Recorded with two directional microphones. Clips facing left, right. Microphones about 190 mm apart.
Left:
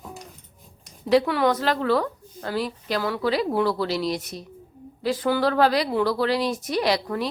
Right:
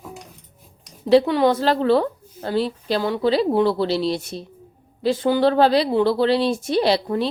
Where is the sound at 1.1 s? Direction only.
25° right (ahead or behind).